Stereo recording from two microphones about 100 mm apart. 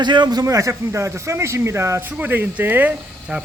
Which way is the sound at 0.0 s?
50° right (ahead or behind).